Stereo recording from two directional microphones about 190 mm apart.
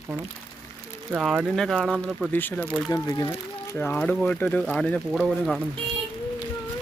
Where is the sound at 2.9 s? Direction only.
20° left (ahead or behind); by 5.6 s centre (ahead or behind).